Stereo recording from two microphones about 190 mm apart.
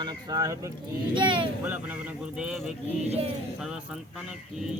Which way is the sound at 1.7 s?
10° right (ahead or behind).